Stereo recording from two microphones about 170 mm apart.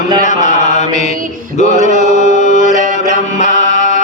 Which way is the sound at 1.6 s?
45° left (ahead or behind).